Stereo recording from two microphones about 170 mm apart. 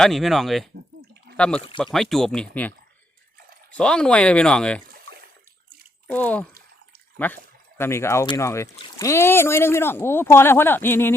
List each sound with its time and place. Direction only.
0.0 s speech: centre (ahead or behind)
6.1 s speech: 10° left (ahead or behind)